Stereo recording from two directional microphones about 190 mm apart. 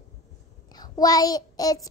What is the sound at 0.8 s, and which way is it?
Child singing, 20° left (ahead or behind).